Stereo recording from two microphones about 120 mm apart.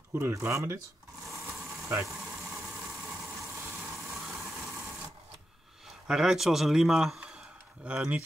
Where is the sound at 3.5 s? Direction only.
25° right (ahead or behind).